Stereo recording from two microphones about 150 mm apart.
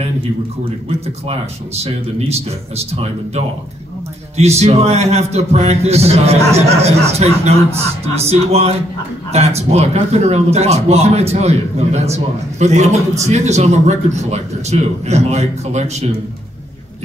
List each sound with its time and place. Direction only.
0.8 s a man's voice: 45° right (ahead or behind)